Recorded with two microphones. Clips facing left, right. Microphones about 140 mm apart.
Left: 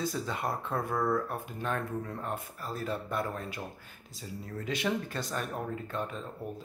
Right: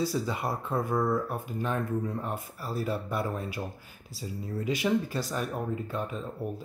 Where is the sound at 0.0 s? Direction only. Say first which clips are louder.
Right 3 dB; 5° right (ahead or behind).